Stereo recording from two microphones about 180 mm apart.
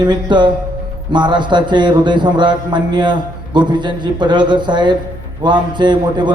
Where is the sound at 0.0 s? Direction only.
25° right (ahead or behind).